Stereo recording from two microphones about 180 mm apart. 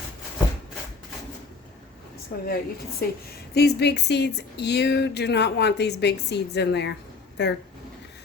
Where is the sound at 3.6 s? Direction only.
65° left (ahead or behind).